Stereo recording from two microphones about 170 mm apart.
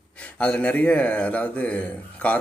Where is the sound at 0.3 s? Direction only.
5° left (ahead or behind).